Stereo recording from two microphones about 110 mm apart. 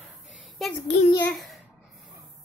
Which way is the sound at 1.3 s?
Centre (ahead or behind).